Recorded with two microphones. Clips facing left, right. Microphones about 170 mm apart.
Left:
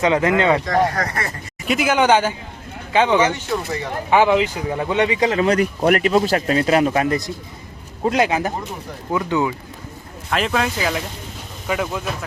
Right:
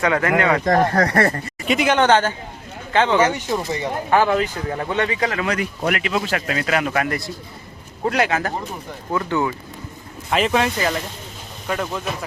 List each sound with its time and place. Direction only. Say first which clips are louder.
0.0 s speech: left 2 dB; 20° left (ahead or behind)
0.6 s speech: right 2 dB; 50° right (ahead or behind)
1.6 s speech: even; centre (ahead or behind); by 5.5 s 25° left (ahead or behind)
5.5 s speech: left 6 dB; 40° left (ahead or behind); by 9.6 s 15° left (ahead or behind)
10.2 s speech: right 2 dB; centre (ahead or behind)